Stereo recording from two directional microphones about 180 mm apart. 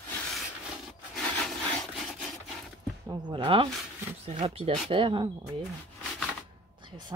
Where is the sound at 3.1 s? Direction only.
25° right (ahead or behind).